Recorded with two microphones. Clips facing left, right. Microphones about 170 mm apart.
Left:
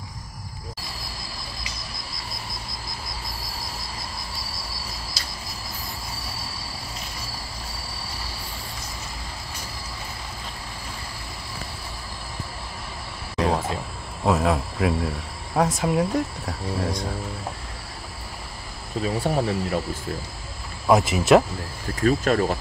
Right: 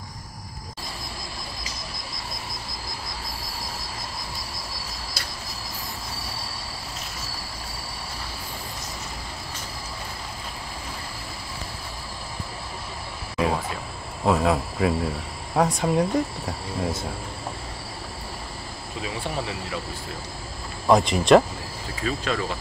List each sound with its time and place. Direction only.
5.2 s cricket: 60° right (ahead or behind)
14.2 s speech: centre (ahead or behind)
18.9 s speech: 40° left (ahead or behind)
20.8 s speech: 5° left (ahead or behind)
22.0 s speech: 45° left (ahead or behind)